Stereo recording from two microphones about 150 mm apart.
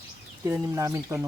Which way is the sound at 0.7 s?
20° right (ahead or behind).